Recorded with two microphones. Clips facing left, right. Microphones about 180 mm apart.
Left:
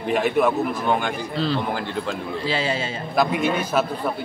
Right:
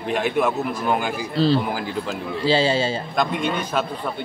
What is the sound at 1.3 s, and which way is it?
Speech, 35° right (ahead or behind).